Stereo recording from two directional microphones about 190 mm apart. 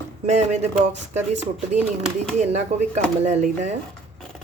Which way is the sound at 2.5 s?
35° right (ahead or behind).